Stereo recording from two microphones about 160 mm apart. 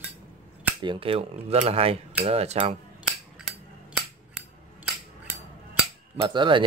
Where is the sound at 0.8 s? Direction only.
35° right (ahead or behind).